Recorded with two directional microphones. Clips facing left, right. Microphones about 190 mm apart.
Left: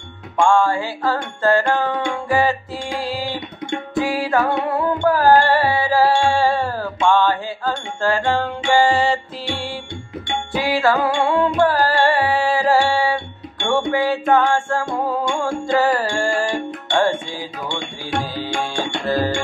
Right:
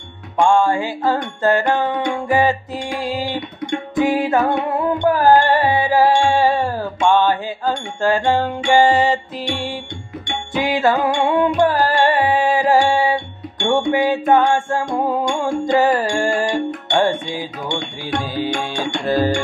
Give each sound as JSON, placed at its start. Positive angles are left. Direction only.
{"t": 0.4, "sound": "music", "side_deg": -20}